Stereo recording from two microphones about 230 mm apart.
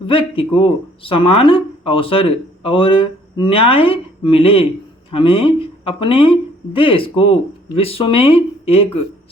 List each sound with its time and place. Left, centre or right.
0.0 s speech: left